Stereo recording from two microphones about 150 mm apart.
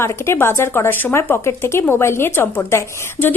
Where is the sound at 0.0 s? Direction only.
15° left (ahead or behind).